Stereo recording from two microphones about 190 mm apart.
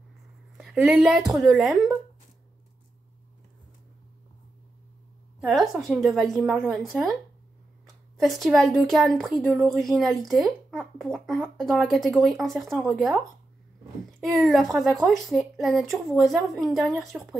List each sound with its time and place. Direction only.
0.6 s speech: 5° right (ahead or behind)
5.4 s speech: centre (ahead or behind)
8.2 s speech: centre (ahead or behind)
14.4 s speech: centre (ahead or behind)